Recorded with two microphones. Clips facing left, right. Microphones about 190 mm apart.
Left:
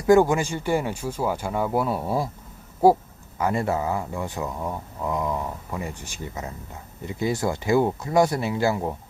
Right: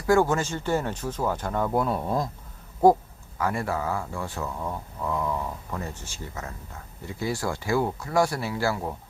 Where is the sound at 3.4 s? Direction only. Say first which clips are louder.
Left 4 dB; 20° left (ahead or behind).